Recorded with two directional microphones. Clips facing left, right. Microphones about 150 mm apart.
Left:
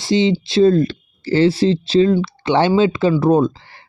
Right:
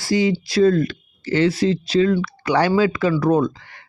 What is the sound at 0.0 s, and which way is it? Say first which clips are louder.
Speech: left 3 dB; 25° left (ahead or behind).